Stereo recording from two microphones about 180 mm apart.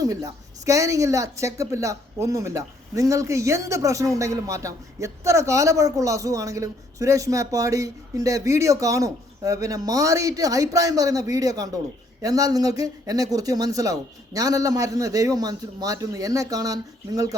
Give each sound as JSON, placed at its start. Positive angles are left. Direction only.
{"t": 0.0, "sound": "speech", "side_deg": -20}